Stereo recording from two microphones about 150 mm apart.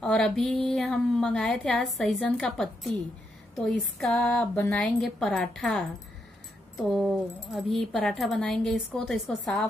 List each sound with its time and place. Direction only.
0.0 s a woman's voice: 5° left (ahead or behind)
4.0 s a woman's voice: 5° left (ahead or behind)